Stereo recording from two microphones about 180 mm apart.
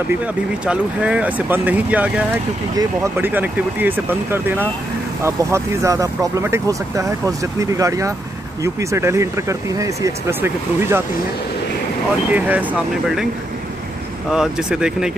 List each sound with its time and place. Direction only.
0.7 s speech: 5° right (ahead or behind)
2.7 s speech: 20° right (ahead or behind)
12.3 s speech: 10° right (ahead or behind)
14.3 s speech: 5° right (ahead or behind)